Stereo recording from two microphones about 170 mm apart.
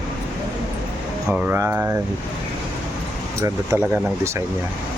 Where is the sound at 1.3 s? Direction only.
15° right (ahead or behind).